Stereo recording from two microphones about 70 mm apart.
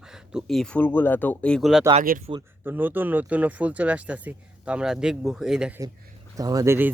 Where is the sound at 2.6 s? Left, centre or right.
Right; by 5.7 s centre.